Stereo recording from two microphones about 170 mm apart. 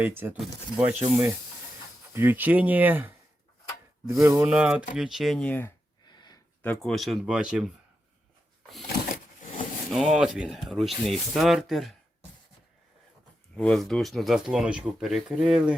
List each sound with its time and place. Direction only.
0.0 s speech: 10° right (ahead or behind)
4.4 s speech: 5° right (ahead or behind); by 5.7 s 10° left (ahead or behind)
6.1 s a sound: 25° left (ahead or behind)
6.6 s speech: 10° left (ahead or behind)
9.9 s speech: centre (ahead or behind)
13.6 s speech: centre (ahead or behind)